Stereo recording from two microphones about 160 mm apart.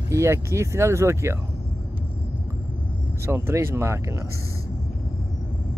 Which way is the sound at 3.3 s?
15° right (ahead or behind).